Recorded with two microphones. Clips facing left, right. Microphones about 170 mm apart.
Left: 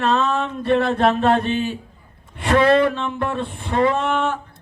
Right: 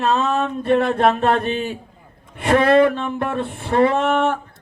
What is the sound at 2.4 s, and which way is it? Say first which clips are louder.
Speech: right 1 dB; 50° right (ahead or behind).